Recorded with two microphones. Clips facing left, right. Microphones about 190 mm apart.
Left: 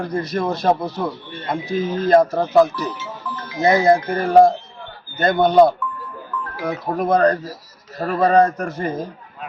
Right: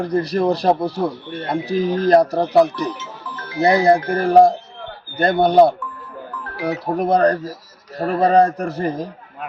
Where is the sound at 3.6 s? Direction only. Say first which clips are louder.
Right 1 dB; 35° right (ahead or behind).